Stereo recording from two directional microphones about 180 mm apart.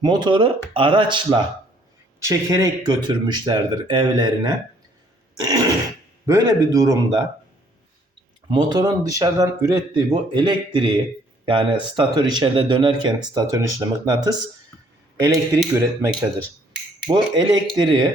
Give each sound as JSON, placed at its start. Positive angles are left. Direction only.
{"t": 0.0, "sound": "speech", "side_deg": -25}
{"t": 8.4, "sound": "speech", "side_deg": -25}